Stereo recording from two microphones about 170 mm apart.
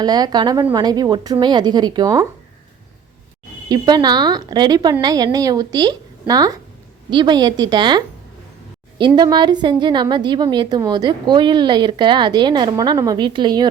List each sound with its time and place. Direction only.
0.0 s a woman's voice: 25° right (ahead or behind)
3.7 s a woman's voice: 25° right (ahead or behind)